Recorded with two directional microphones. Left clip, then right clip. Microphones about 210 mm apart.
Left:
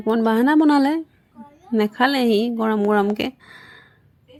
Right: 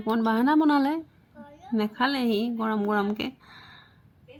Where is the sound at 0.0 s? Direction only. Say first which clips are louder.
Left 6 dB; 35° left (ahead or behind).